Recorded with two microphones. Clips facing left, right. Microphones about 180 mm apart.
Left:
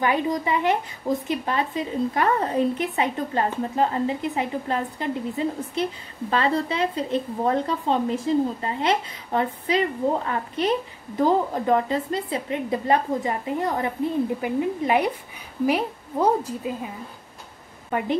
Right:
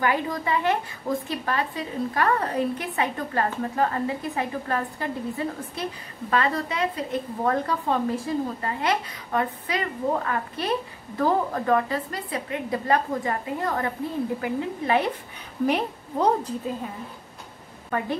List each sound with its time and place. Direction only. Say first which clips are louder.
0.0 s a woman's voice: left 2 dB; 20° left (ahead or behind)
17.9 s a woman's voice: left 2 dB; 20° left (ahead or behind)